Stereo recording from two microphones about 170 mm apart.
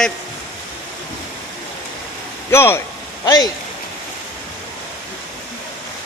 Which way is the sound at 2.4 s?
15° left (ahead or behind).